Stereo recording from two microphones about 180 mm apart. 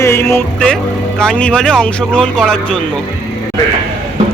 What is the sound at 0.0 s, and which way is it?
A man's voice, 15° left (ahead or behind).